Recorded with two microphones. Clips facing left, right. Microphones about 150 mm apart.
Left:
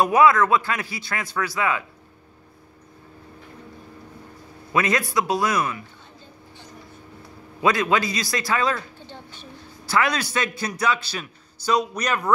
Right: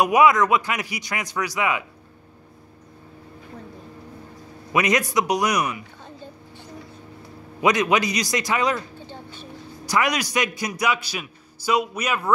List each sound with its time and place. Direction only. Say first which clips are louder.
0.0 s a man's voice: even; 15° right (ahead or behind)
4.7 s a man's voice: right 1 dB; 15° right (ahead or behind)
7.6 s a man's voice: right 1 dB; 20° right (ahead or behind)
9.8 s a man's voice: even; 15° right (ahead or behind)